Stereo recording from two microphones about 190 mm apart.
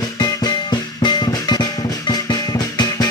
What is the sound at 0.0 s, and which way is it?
Music, 20° left (ahead or behind).